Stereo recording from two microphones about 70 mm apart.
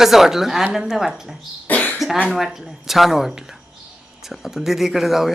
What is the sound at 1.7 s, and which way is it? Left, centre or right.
Cough, left.